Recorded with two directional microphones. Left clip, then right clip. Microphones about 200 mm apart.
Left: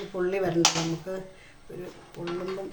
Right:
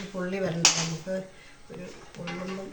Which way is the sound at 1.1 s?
60° left (ahead or behind).